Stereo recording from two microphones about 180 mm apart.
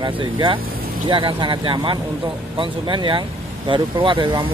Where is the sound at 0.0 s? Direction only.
25° right (ahead or behind).